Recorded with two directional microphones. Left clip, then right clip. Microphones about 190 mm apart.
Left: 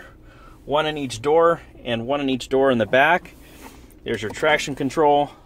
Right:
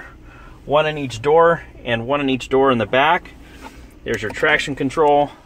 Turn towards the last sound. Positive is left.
turn(degrees=25)  # may be behind; listen again after turning